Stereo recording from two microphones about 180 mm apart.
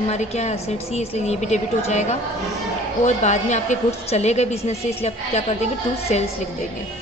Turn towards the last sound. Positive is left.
turn(degrees=40)  # may be behind; listen again after turning